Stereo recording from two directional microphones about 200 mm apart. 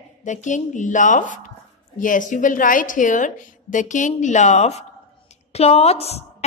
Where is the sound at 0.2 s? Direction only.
40° left (ahead or behind).